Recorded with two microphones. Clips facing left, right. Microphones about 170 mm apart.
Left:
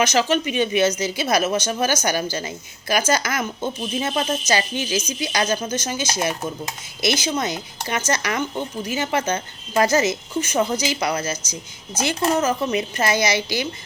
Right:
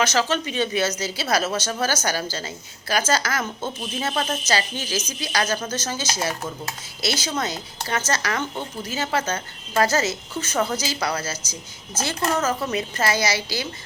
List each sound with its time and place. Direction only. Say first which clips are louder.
0.0 s speech: left 3 dB; 15° left (ahead or behind)